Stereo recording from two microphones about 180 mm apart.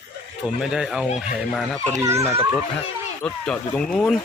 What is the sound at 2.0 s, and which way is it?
Speech, 15° right (ahead or behind).